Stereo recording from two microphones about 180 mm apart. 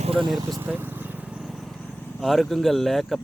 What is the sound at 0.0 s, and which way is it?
Vehicle, 30° right (ahead or behind).